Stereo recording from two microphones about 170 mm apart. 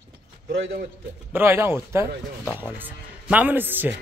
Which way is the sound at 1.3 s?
15° right (ahead or behind).